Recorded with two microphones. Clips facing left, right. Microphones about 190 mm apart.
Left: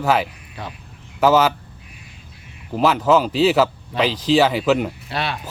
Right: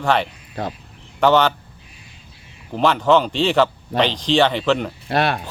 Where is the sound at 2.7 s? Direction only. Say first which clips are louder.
Even; 5° left (ahead or behind).